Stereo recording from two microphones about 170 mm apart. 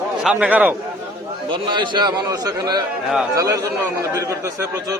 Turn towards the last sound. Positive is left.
turn(degrees=-20)  # may be behind; listen again after turning